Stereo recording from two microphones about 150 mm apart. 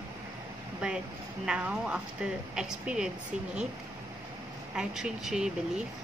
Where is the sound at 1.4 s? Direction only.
5° right (ahead or behind).